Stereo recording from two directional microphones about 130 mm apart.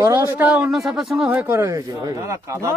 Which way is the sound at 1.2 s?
15° right (ahead or behind).